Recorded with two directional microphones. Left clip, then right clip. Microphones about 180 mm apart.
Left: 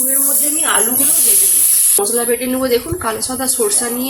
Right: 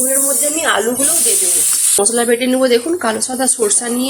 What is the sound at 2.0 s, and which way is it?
Speech, 50° right (ahead or behind).